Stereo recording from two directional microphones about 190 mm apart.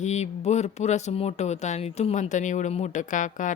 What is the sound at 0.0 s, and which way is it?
Speech, 35° left (ahead or behind).